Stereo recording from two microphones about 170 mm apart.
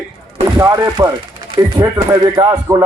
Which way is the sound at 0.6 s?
20° right (ahead or behind).